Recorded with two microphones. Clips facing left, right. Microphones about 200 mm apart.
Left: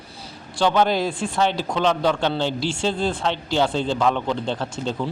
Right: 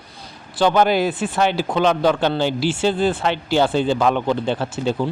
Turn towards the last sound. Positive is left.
turn(degrees=-10)  # may be behind; listen again after turning